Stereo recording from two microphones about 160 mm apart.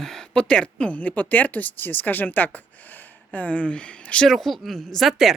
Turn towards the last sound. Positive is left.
turn(degrees=0)  # may be behind; listen again after turning